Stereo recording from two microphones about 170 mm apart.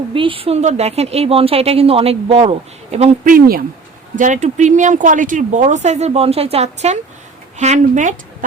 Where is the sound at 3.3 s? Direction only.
55° right (ahead or behind).